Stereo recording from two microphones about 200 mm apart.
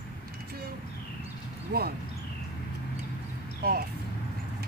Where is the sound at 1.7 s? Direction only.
55° right (ahead or behind).